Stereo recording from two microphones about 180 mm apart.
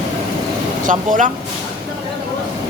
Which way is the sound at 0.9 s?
45° right (ahead or behind).